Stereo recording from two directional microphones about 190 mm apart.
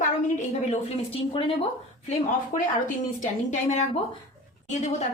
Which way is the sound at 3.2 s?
40° left (ahead or behind).